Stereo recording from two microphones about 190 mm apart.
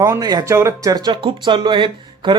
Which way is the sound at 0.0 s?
20° right (ahead or behind).